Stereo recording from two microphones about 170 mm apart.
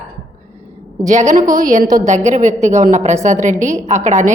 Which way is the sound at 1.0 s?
45° right (ahead or behind).